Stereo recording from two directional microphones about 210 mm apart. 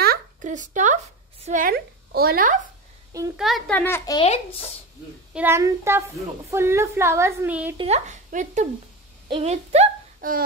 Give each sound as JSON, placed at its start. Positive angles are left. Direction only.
{"t": 0.0, "sound": "a sound", "side_deg": -40}
{"t": 1.4, "sound": "a woman's voice", "side_deg": -40}
{"t": 3.3, "sound": "a woman's voice", "side_deg": 0}
{"t": 5.3, "sound": "a woman's voice", "side_deg": -10}
{"t": 7.7, "sound": "speech", "side_deg": -30}